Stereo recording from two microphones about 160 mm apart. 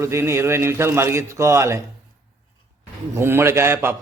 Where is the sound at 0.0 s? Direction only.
15° right (ahead or behind).